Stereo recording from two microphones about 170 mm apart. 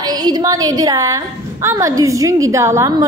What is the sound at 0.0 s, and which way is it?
A woman's voice, 25° right (ahead or behind).